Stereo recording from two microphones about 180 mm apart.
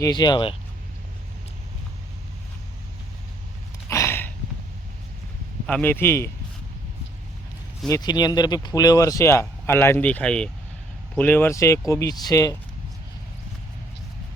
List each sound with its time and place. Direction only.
0.0 s speech: 25° left (ahead or behind)
3.8 s a sound: 15° left (ahead or behind)
5.6 s speech: 10° left (ahead or behind)
7.9 s speech: 20° left (ahead or behind)